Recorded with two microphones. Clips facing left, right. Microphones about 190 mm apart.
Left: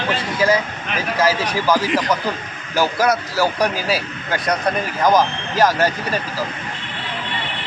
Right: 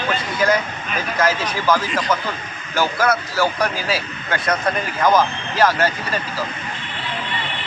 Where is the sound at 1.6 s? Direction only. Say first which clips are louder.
Left 1 dB; 10° left (ahead or behind).